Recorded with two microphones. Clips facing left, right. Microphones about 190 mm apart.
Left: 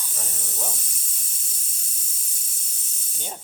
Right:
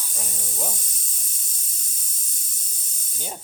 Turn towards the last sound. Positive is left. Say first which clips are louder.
# right 2 dB
turn(degrees=-10)  # may be behind; listen again after turning